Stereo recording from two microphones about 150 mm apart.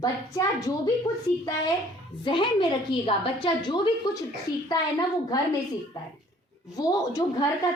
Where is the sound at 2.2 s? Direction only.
35° left (ahead or behind).